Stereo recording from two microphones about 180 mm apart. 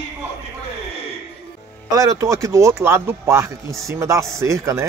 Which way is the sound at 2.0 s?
15° right (ahead or behind).